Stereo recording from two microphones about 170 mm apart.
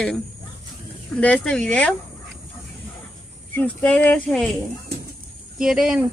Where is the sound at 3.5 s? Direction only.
10° left (ahead or behind).